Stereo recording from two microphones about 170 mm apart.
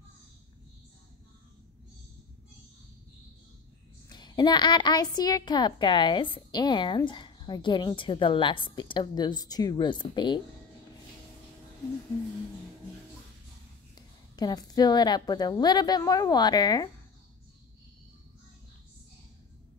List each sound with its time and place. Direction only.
4.1 s a woman's voice: 25° left (ahead or behind)
13.9 s a woman's voice: 25° left (ahead or behind)